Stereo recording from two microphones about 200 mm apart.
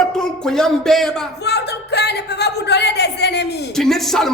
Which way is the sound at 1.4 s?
55° left (ahead or behind).